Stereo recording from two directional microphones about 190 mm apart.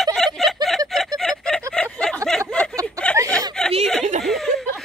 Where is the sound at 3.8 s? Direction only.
Centre (ahead or behind).